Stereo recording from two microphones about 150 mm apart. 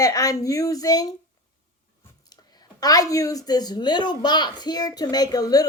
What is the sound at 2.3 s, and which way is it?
A woman's voice, 25° left (ahead or behind).